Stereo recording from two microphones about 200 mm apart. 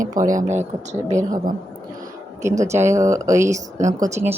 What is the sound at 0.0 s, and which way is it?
Speech, 15° right (ahead or behind).